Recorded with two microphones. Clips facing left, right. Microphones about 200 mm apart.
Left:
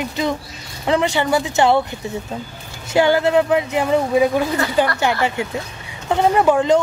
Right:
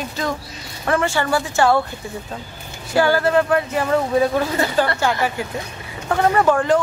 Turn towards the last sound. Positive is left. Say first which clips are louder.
# left 2 dB
turn(degrees=15)  # may be behind; listen again after turning